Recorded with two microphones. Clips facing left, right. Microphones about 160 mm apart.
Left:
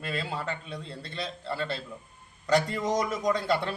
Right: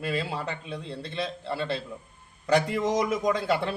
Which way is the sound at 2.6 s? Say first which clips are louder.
Right 3 dB; 5° right (ahead or behind).